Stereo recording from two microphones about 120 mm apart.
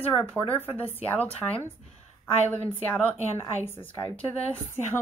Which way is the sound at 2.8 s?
15° left (ahead or behind).